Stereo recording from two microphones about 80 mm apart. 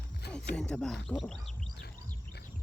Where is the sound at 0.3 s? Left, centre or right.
Centre.